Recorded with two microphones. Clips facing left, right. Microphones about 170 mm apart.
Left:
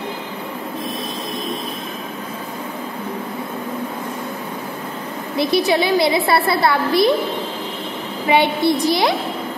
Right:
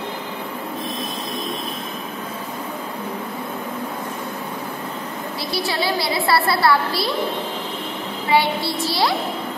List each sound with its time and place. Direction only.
5.4 s a woman's voice: 20° left (ahead or behind)
8.3 s a woman's voice: 20° left (ahead or behind)